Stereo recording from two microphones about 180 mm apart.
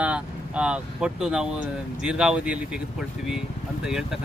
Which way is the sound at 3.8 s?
5° right (ahead or behind).